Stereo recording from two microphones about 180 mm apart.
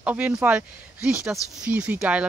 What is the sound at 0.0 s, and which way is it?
Speech, 5° right (ahead or behind).